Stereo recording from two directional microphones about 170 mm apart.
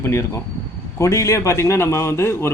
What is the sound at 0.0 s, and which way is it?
Speech, 15° left (ahead or behind).